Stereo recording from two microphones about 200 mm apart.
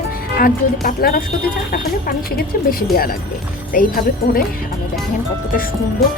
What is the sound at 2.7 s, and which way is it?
Speech, 50° left (ahead or behind).